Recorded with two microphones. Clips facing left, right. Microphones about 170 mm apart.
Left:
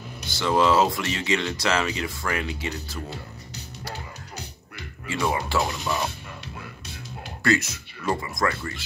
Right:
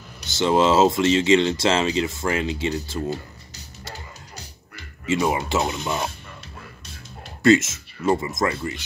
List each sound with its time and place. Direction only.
0.3 s speech: 25° right (ahead or behind)
5.0 s speech: 20° right (ahead or behind)
7.4 s speech: 25° right (ahead or behind)